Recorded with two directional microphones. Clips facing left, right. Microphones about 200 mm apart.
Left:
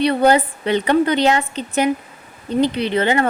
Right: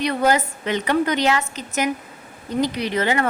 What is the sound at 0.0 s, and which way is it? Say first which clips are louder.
Speech: left 5 dB; 30° left (ahead or behind).